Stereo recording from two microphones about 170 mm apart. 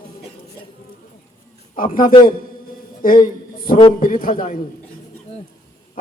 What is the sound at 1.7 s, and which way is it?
A man's voice, 55° left (ahead or behind).